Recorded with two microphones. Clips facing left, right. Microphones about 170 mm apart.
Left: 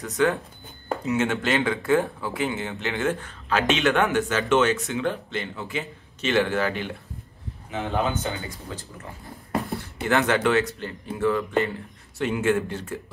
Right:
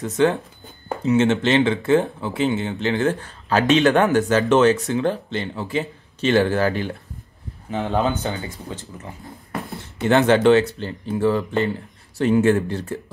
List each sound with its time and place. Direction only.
0.0 s speech: 25° right (ahead or behind)
9.8 s speech: 25° right (ahead or behind)